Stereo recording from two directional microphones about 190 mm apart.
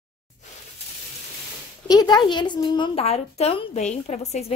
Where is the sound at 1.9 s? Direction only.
20° left (ahead or behind).